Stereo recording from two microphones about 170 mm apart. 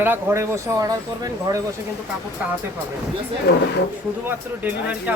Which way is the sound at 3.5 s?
75° left (ahead or behind).